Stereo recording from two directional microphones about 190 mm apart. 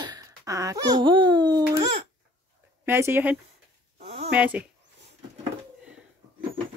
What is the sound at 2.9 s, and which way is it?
Speech, 10° right (ahead or behind).